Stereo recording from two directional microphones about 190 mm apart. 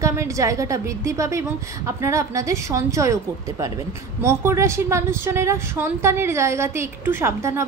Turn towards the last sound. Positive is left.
turn(degrees=-15)  # may be behind; listen again after turning